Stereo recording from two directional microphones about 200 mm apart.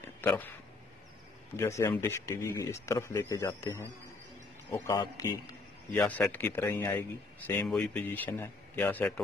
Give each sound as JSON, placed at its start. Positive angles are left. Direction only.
{"t": 0.2, "sound": "speech", "side_deg": 10}
{"t": 1.6, "sound": "speech", "side_deg": 15}
{"t": 5.9, "sound": "speech", "side_deg": 5}